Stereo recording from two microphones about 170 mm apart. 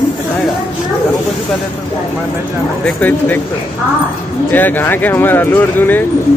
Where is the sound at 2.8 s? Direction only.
10° left (ahead or behind).